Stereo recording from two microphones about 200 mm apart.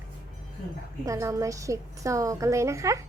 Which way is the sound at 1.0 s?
15° right (ahead or behind).